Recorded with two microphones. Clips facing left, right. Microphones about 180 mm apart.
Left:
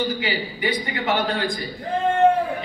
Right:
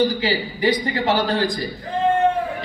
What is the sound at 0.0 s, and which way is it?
A man's voice, 35° right (ahead or behind).